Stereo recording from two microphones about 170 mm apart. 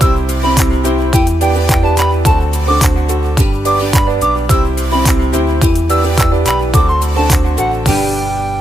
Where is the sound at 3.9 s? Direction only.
Centre (ahead or behind).